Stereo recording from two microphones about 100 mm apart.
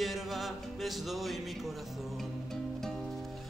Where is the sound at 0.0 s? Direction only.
Centre (ahead or behind).